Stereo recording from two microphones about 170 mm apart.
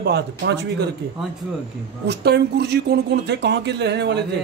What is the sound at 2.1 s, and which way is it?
Speech, 80° right.